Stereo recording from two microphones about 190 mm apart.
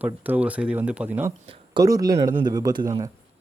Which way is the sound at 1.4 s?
30° right (ahead or behind).